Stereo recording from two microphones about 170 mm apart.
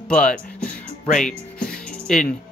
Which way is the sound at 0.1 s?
5° left (ahead or behind).